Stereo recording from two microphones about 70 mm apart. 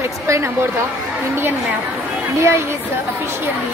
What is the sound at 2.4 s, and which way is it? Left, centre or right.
Speech, right.